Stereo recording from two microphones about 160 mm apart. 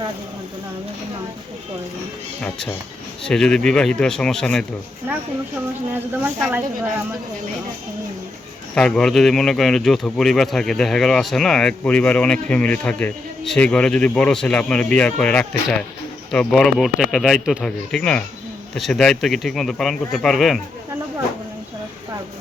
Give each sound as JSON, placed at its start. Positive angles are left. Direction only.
{"t": 2.4, "sound": "speech", "side_deg": 5}
{"t": 6.4, "sound": "speech", "side_deg": -10}
{"t": 8.7, "sound": "speech", "side_deg": 5}